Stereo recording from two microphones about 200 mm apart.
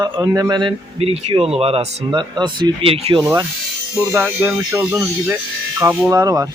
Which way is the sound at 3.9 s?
10° right (ahead or behind).